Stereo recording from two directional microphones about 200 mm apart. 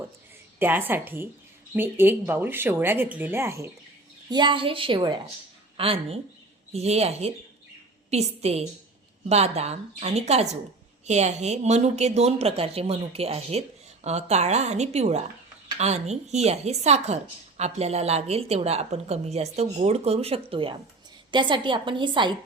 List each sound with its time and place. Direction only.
0.6 s a woman's voice: 10° right (ahead or behind)